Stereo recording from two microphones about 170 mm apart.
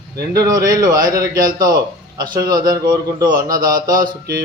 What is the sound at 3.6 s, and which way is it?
Speech, 55° right (ahead or behind).